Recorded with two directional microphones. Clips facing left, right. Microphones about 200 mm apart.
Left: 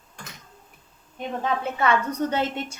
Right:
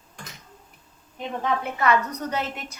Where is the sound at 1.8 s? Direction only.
30° left (ahead or behind).